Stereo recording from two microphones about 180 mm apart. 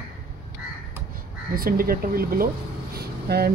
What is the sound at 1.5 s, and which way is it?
Speech, 55° right (ahead or behind).